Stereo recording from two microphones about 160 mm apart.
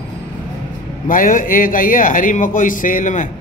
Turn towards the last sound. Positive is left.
turn(degrees=55)  # may be behind; listen again after turning